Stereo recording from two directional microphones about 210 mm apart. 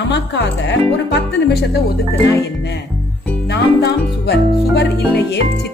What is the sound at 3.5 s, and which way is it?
Music, 50° left (ahead or behind).